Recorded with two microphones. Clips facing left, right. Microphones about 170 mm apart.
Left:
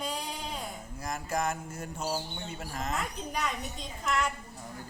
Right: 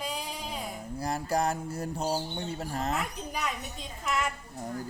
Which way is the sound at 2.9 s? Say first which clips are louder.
Right 1 dB; centre (ahead or behind).